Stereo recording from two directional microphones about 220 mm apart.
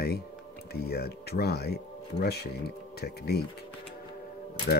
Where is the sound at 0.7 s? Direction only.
45° left (ahead or behind).